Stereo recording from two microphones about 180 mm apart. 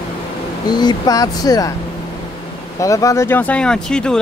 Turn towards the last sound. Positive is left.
turn(degrees=5)  # may be behind; listen again after turning